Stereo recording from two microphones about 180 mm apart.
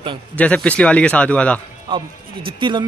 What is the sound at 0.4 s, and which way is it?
Speech, 5° left (ahead or behind).